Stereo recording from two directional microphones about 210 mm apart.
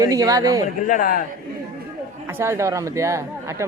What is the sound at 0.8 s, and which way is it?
Speech, 40° left (ahead or behind).